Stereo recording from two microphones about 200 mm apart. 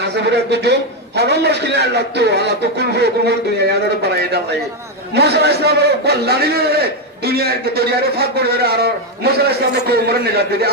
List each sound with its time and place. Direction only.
0.0 s a man's voice: 60° right (ahead or behind)